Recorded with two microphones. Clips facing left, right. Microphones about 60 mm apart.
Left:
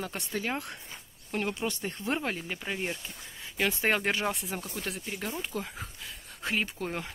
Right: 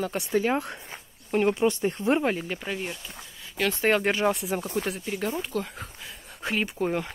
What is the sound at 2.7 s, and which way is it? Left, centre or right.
Speech, centre.